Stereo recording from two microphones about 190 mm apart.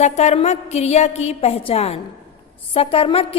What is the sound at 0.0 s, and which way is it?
A woman's voice, 35° left (ahead or behind).